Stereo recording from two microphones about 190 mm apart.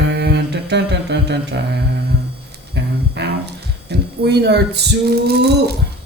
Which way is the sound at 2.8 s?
60° right (ahead or behind).